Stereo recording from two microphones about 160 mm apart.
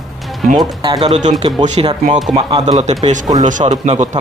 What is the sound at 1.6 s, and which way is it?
Speech, 45° right (ahead or behind).